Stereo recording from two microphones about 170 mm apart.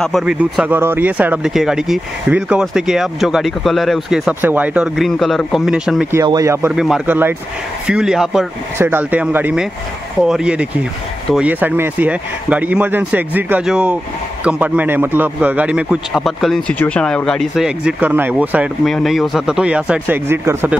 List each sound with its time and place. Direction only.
0.0 s speech: centre (ahead or behind)
6.2 s speech: 20° right (ahead or behind)
6.7 s speech: 5° right (ahead or behind)